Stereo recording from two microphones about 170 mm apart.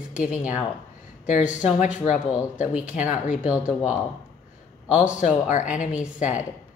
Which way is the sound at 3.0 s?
50° left (ahead or behind).